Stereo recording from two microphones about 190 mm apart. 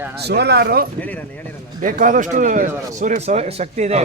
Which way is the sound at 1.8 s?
45° right (ahead or behind).